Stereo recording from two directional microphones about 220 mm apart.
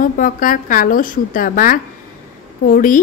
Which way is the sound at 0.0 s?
40° left (ahead or behind).